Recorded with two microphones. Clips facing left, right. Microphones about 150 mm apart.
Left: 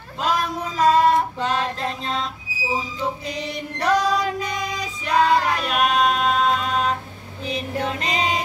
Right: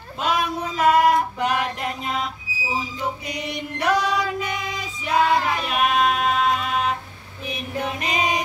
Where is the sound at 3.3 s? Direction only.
30° left (ahead or behind).